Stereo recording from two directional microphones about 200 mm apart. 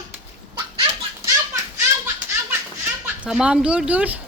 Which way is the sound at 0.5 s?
25° right (ahead or behind).